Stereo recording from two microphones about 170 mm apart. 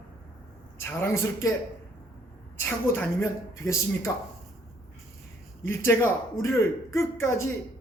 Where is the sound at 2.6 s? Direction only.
15° left (ahead or behind).